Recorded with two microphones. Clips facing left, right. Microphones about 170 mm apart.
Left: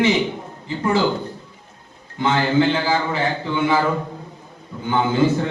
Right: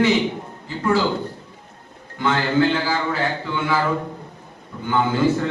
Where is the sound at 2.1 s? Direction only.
20° left (ahead or behind).